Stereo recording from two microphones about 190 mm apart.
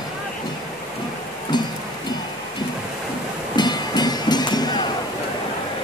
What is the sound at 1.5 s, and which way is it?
Music, 25° left (ahead or behind).